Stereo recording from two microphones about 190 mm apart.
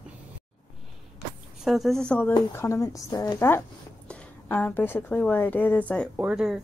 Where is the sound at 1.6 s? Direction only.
Centre (ahead or behind).